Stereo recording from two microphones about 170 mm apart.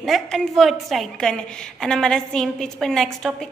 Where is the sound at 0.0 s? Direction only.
Centre (ahead or behind).